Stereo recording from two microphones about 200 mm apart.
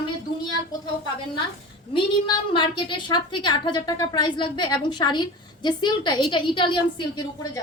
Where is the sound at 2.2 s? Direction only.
25° left (ahead or behind).